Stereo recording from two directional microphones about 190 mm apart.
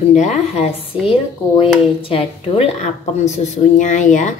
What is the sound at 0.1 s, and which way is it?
A woman's voice, 35° left (ahead or behind).